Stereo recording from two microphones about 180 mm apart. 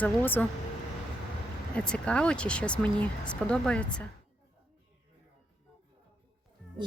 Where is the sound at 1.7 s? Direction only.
5° left (ahead or behind).